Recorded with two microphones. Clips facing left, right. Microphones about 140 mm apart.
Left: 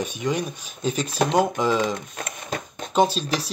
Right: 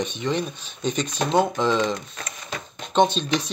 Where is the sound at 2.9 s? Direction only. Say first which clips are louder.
Right 1 dB; 5° left (ahead or behind).